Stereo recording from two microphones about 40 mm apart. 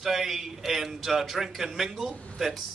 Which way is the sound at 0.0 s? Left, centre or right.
Centre.